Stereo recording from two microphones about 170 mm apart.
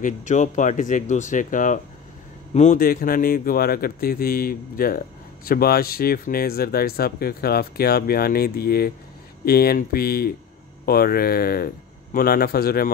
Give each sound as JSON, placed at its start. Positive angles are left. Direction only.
{"t": 0.0, "sound": "speech", "side_deg": 45}